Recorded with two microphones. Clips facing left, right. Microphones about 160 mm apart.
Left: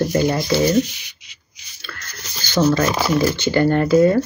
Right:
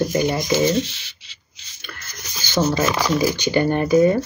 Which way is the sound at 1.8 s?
20° right (ahead or behind).